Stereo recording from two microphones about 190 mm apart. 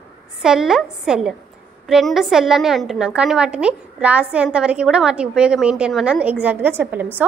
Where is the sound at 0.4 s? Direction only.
Centre (ahead or behind).